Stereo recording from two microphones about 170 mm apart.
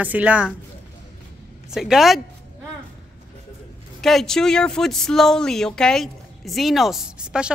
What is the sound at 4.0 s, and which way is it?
Speech, centre (ahead or behind).